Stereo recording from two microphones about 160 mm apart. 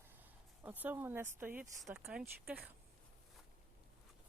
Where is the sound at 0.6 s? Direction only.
10° right (ahead or behind).